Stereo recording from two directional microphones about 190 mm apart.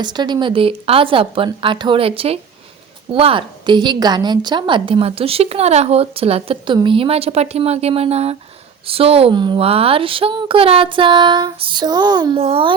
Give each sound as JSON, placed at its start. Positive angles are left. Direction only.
{"t": 0.0, "sound": "a woman's voice", "side_deg": -20}